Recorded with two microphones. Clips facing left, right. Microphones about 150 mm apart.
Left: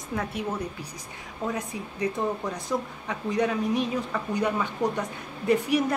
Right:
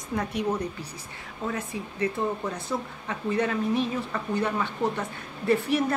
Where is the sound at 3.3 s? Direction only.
15° left (ahead or behind).